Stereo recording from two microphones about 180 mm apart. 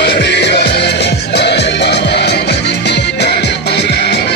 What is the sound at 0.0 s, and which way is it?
Music, 70° left (ahead or behind).